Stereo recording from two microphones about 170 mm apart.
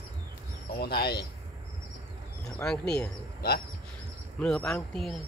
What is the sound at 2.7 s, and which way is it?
Speech, 5° left (ahead or behind).